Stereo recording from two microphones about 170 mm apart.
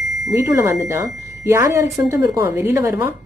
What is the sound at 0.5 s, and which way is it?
A woman's voice, 15° right (ahead or behind).